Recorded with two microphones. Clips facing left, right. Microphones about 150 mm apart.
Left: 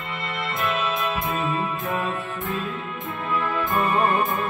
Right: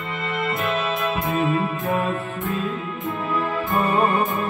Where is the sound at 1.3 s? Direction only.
40° right (ahead or behind).